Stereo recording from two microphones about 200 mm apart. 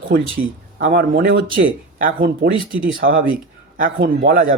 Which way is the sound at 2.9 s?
75° right (ahead or behind).